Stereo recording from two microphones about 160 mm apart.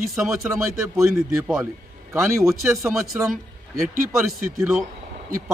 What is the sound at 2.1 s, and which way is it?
A man's voice, 20° right (ahead or behind).